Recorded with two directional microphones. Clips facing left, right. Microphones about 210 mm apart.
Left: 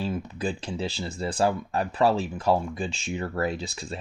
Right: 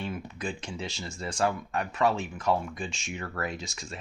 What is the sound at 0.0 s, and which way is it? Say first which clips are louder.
Speech: left 5 dB; 35° left (ahead or behind).